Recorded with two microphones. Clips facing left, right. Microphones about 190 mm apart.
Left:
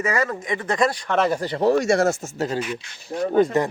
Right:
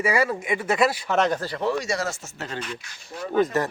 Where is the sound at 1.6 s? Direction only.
45° left (ahead or behind).